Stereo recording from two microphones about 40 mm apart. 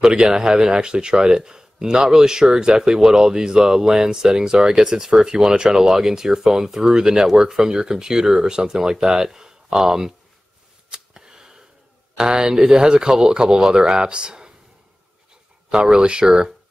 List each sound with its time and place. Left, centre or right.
0.2 s speech: centre
10.9 s a sound: centre
12.2 s speech: right
15.7 s speech: right